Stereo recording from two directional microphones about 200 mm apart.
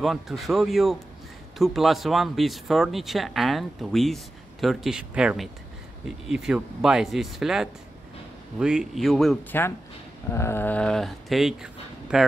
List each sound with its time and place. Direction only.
0.0 s speech: centre (ahead or behind)